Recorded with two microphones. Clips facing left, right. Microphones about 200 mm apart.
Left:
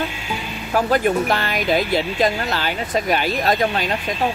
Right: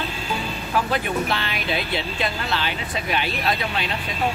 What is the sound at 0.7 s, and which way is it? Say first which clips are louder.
Speech: left 6 dB; 45° left (ahead or behind).